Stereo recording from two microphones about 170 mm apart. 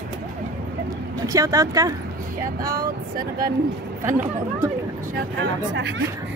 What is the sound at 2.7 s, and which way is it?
Speech, 60° right (ahead or behind).